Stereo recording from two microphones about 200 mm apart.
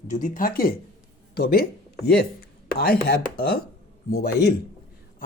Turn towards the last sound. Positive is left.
turn(degrees=50)  # may be behind; listen again after turning